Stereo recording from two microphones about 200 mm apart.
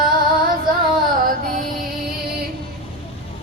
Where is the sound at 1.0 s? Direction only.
45° right (ahead or behind).